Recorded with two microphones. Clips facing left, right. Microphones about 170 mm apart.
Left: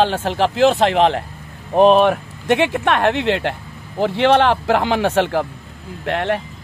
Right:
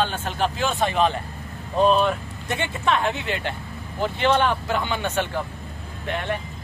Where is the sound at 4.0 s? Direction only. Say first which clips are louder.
Left 6 dB; 90° left.